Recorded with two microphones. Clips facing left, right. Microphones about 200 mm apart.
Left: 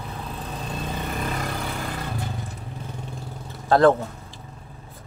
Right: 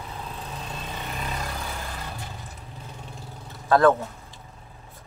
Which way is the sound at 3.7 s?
30° left (ahead or behind).